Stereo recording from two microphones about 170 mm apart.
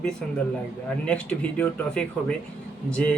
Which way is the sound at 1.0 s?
5° left (ahead or behind).